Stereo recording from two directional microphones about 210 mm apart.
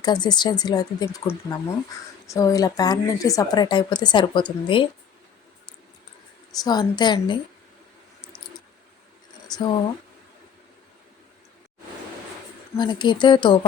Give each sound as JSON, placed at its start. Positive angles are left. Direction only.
{"t": 0.0, "sound": "a woman's voice", "side_deg": 20}
{"t": 6.6, "sound": "a woman's voice", "side_deg": 20}
{"t": 9.5, "sound": "a woman's voice", "side_deg": 20}
{"t": 12.7, "sound": "a woman's voice", "side_deg": 20}